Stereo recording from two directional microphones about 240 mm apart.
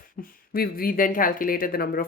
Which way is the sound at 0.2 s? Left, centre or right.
Left.